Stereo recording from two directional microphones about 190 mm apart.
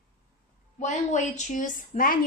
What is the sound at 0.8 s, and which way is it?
A woman's voice, 40° left (ahead or behind).